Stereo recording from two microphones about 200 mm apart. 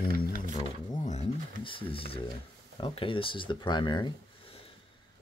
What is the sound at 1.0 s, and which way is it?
Speech, 35° left (ahead or behind).